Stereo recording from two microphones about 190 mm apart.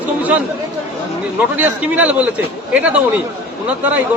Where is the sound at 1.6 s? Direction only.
10° right (ahead or behind).